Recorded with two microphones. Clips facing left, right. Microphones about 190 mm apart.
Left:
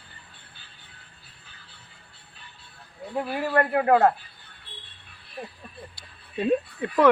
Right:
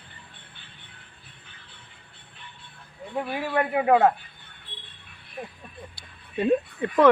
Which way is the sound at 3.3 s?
Centre (ahead or behind).